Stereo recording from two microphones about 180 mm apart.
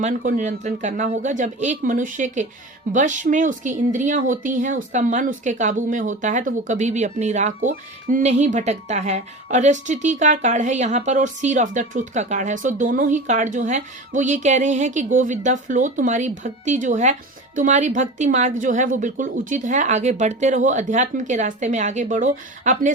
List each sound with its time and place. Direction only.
0.0 s a woman's voice: 45° right (ahead or behind)